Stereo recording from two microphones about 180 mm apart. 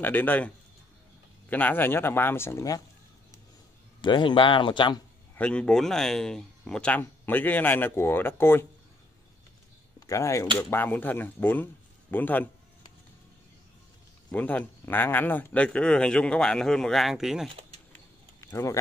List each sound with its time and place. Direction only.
0.0 s speech: 10° left (ahead or behind)
1.5 s speech: 10° left (ahead or behind)
4.0 s a man's voice: 25° left (ahead or behind)
5.3 s speech: 5° left (ahead or behind)
9.9 s speech: 15° left (ahead or behind)
14.3 s speech: 10° left (ahead or behind)
18.4 s speech: 15° left (ahead or behind)